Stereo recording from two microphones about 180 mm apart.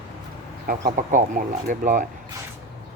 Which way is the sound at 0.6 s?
50° right (ahead or behind).